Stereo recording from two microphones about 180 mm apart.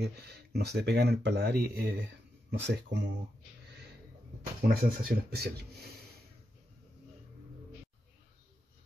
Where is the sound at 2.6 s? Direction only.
75° right (ahead or behind).